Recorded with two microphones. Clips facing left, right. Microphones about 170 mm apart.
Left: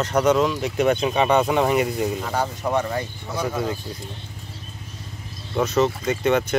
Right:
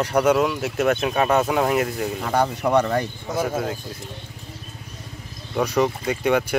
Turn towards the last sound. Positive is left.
turn(degrees=-10)  # may be behind; listen again after turning